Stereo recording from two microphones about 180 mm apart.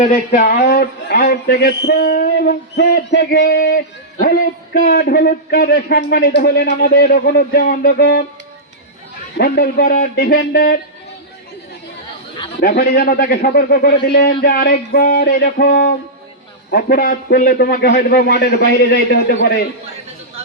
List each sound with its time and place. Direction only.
0.1 s a man's voice: 50° left (ahead or behind)
9.4 s a man's voice: 60° left (ahead or behind)
12.5 s a man's voice: 55° left (ahead or behind)